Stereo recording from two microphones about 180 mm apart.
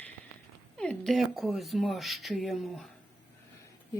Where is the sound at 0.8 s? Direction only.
5° left (ahead or behind).